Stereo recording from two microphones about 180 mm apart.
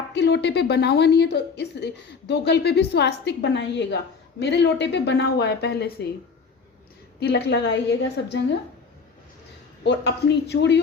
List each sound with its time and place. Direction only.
0.1 s a woman's voice: 75° left (ahead or behind)
7.2 s a woman's voice: 70° left (ahead or behind)
9.8 s a woman's voice: 75° left (ahead or behind)